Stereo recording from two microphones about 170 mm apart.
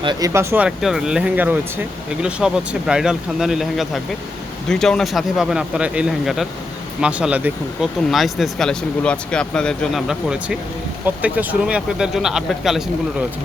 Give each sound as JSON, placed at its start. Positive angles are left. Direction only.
{"t": 0.0, "sound": "speech", "side_deg": -25}
{"t": 0.3, "sound": "speech", "side_deg": -10}